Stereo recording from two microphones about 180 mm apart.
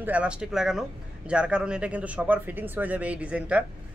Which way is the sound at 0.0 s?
5° right (ahead or behind).